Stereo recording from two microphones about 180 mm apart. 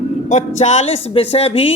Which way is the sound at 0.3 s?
40° left (ahead or behind).